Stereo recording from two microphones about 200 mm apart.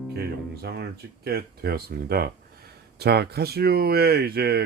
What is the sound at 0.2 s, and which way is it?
Speech, 50° right (ahead or behind).